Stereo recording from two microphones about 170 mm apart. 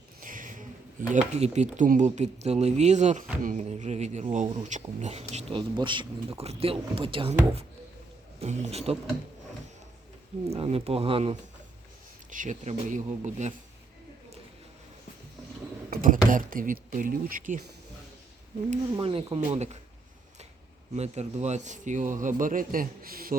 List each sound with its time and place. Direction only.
0.2 s a sound: 50° right (ahead or behind)
1.1 s speech: 45° right (ahead or behind)
8.4 s speech: 40° right (ahead or behind)
10.5 s speech: 35° right (ahead or behind)
12.3 s speech: 50° right (ahead or behind)
15.9 s a sound: 55° right (ahead or behind)
16.3 s speech: 55° right (ahead or behind)
18.9 s speech: 35° right (ahead or behind)
20.9 s speech: 40° right (ahead or behind); by 23.3 s 60° right (ahead or behind)